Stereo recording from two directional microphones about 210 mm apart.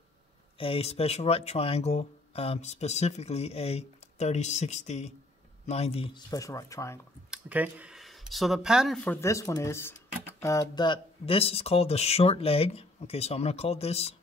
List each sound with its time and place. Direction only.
0.6 s speech: 25° left (ahead or behind)
7.2 s speech: 5° right (ahead or behind); by 14.1 s 30° left (ahead or behind)